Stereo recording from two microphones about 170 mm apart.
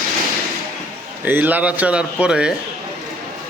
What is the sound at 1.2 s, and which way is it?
A man's voice, 10° right (ahead or behind).